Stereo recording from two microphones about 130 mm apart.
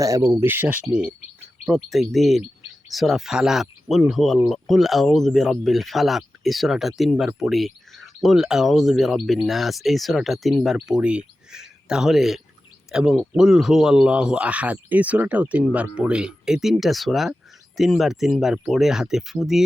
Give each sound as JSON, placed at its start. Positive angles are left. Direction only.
{"t": 0.0, "sound": "speech", "side_deg": -25}